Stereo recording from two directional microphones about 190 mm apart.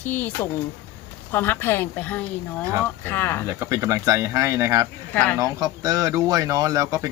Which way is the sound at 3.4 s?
15° right (ahead or behind).